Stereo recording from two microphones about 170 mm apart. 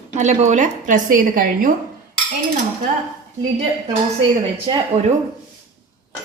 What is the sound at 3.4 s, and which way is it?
Speech, 40° right (ahead or behind).